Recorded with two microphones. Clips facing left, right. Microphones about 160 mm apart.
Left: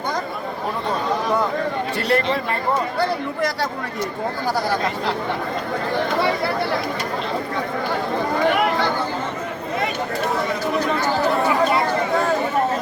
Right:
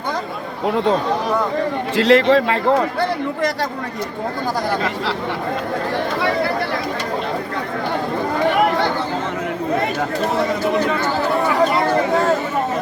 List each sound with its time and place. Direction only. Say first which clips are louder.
2.0 s a man's voice: right 9 dB; 90° right